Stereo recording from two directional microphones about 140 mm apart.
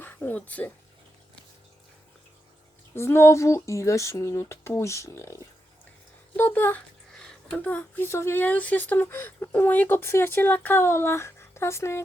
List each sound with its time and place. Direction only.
0.0 s speech: 15° left (ahead or behind)
2.9 s speech: 15° left (ahead or behind)